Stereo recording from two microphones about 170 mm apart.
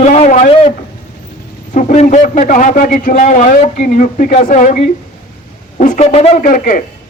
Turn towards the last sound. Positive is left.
turn(degrees=55)  # may be behind; listen again after turning